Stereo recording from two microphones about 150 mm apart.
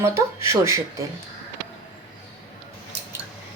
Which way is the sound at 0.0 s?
20° right (ahead or behind).